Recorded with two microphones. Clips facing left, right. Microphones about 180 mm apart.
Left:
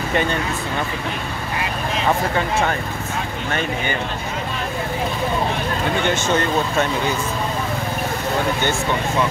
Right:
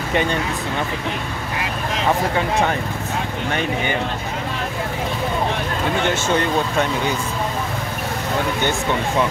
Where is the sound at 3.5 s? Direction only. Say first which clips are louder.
Right 1 dB; 15° right (ahead or behind).